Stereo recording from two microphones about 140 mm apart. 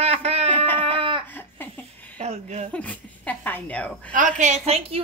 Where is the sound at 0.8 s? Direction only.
40° right (ahead or behind).